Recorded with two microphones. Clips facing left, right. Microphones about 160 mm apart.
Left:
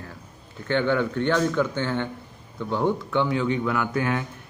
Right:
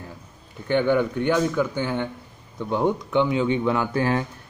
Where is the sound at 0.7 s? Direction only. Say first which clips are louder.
Right 2 dB; 15° right (ahead or behind).